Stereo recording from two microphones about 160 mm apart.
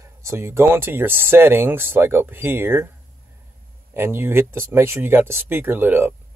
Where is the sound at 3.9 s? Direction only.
15° right (ahead or behind).